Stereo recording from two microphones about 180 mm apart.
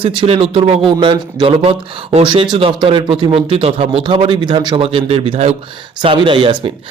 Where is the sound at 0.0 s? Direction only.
30° right (ahead or behind).